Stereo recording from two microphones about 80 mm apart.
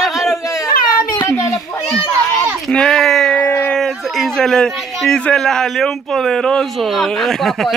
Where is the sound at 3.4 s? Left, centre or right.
Left.